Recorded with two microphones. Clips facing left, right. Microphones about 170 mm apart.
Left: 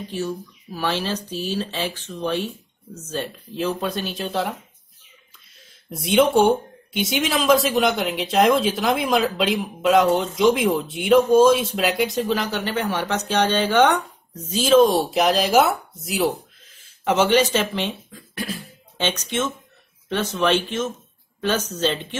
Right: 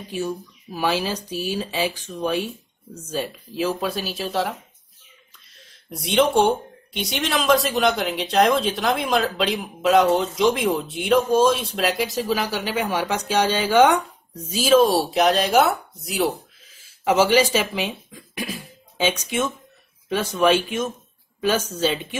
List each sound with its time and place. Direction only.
0.1 s speech: 10° right (ahead or behind)